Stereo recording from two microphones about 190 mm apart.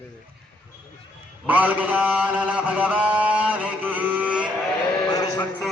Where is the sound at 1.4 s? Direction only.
10° right (ahead or behind).